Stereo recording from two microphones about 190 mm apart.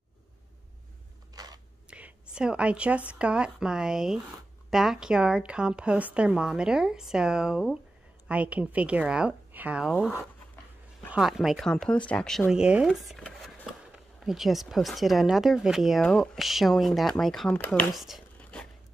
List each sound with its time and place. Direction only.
1.3 s a sound: 20° right (ahead or behind)
1.9 s whispering: 5° right (ahead or behind)
2.3 s speech: 5° right (ahead or behind)
11.1 s speech: centre (ahead or behind)